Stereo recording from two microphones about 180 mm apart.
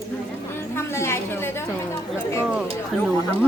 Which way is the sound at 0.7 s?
15° left (ahead or behind).